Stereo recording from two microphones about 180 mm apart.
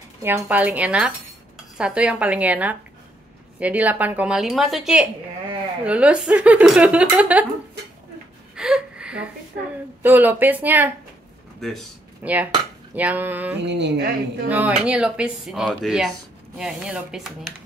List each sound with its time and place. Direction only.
0.2 s speech: 10° right (ahead or behind)
8.5 s gasp: 5° right (ahead or behind)
10.0 s speech: 10° right (ahead or behind)
12.2 s speech: 10° right (ahead or behind)
13.6 s speech: 70° right (ahead or behind)
14.5 s speech: 10° right (ahead or behind)